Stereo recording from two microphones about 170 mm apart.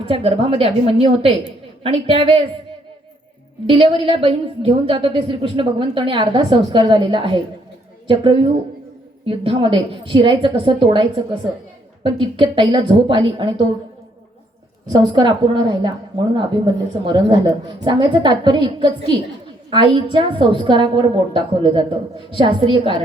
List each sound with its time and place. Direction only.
0.0 s a woman's voice: 35° right (ahead or behind)
3.7 s a woman's voice: 35° right (ahead or behind)
14.8 s a woman's voice: 25° right (ahead or behind)